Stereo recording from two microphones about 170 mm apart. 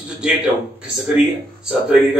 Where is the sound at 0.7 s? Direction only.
5° right (ahead or behind).